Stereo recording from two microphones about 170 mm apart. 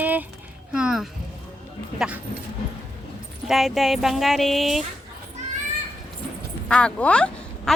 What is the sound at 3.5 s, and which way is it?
Speech, centre (ahead or behind).